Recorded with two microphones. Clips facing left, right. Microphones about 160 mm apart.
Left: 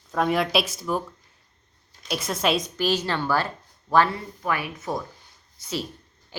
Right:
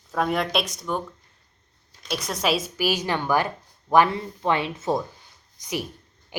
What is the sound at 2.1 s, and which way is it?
A woman's voice, centre (ahead or behind).